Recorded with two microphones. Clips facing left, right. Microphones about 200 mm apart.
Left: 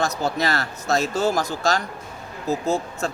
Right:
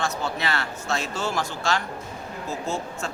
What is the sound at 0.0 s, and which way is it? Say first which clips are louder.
A man's voice: left 4 dB; 40° left (ahead or behind).